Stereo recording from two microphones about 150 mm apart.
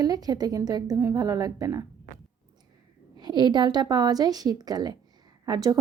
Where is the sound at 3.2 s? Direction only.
30° right (ahead or behind).